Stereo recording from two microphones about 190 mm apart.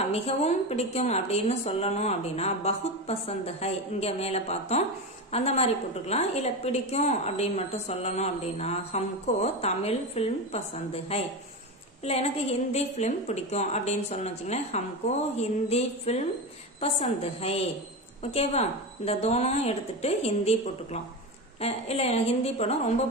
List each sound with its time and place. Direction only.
0.1 s a woman's voice: 35° left (ahead or behind)